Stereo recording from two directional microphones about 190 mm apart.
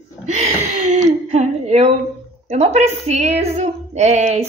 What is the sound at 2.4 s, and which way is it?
Speech, 35° right (ahead or behind).